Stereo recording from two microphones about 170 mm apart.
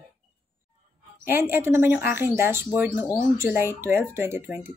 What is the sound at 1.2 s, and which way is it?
Speech, 10° right (ahead or behind).